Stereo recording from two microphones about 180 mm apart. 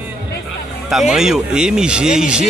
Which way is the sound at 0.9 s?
Centre (ahead or behind).